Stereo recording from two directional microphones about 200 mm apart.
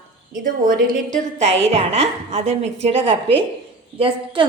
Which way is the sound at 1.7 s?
35° right (ahead or behind).